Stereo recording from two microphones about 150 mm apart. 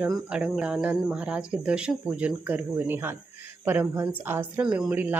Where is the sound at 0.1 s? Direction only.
5° right (ahead or behind).